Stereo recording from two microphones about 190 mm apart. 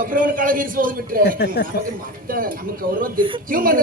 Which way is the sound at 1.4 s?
60° left (ahead or behind).